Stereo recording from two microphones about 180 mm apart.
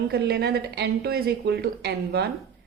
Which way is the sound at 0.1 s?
65° right (ahead or behind).